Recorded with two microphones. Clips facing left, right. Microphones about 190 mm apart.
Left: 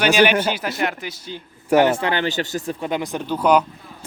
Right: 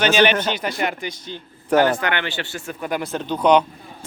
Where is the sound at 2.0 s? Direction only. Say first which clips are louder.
Left 3 dB; 35° left (ahead or behind).